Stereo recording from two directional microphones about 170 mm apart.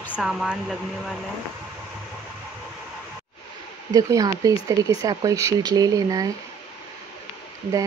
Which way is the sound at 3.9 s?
20° right (ahead or behind).